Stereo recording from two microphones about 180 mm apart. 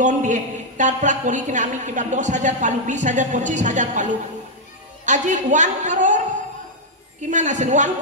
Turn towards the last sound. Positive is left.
turn(degrees=-40)  # may be behind; listen again after turning